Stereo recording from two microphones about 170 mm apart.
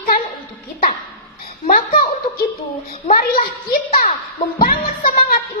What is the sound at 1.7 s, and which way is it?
A woman's voice, 55° left (ahead or behind).